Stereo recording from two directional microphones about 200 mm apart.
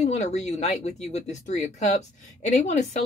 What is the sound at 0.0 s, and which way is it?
Speech, 35° left (ahead or behind).